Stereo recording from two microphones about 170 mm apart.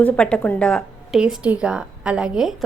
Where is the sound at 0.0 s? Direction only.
5° left (ahead or behind).